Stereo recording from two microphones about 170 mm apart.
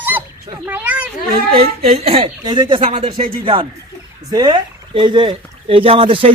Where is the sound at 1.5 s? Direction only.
35° right (ahead or behind).